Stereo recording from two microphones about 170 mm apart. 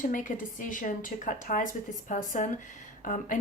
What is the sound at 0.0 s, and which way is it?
A woman's voice, 50° left (ahead or behind).